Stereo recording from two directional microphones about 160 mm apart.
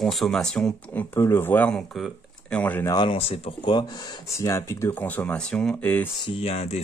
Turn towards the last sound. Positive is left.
turn(degrees=40)  # may be behind; listen again after turning